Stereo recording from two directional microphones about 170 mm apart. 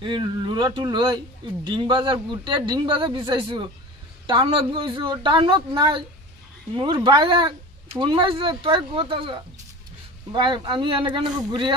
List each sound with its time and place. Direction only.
0.0 s speech: 25° right (ahead or behind)